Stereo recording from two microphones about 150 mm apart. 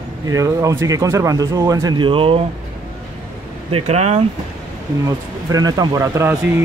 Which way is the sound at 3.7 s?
45° right (ahead or behind).